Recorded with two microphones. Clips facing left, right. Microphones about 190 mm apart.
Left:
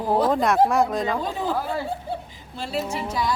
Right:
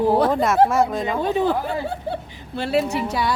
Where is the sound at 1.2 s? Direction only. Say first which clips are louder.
Right 5 dB; 70° right (ahead or behind).